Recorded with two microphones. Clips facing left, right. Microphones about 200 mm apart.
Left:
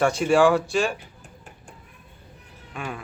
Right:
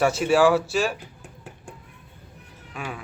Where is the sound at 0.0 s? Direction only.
5° right (ahead or behind).